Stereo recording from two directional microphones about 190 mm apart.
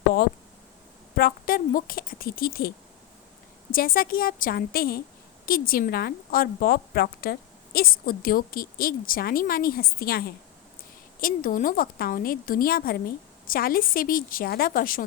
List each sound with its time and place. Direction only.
1.1 s a woman's voice: 50° left (ahead or behind)